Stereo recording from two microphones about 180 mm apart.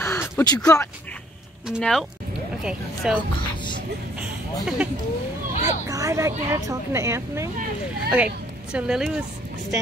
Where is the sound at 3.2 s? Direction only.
25° left (ahead or behind).